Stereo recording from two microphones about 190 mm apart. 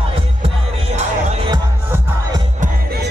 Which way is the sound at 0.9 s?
35° right (ahead or behind).